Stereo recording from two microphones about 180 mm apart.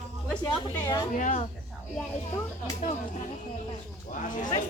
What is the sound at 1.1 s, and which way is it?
Speech, 45° left (ahead or behind).